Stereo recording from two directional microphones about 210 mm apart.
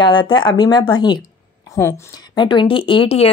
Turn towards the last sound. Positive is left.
turn(degrees=25)  # may be behind; listen again after turning